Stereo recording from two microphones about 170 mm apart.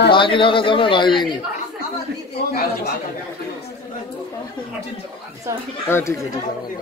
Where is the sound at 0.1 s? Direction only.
30° left (ahead or behind).